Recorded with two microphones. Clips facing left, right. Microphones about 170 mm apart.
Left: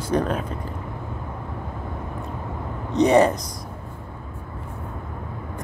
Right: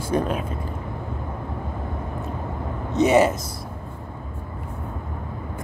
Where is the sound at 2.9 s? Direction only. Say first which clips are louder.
Left 1 dB; 5° right (ahead or behind).